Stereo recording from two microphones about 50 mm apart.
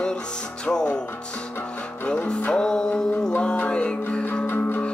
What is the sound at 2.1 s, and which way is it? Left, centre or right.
Music, centre.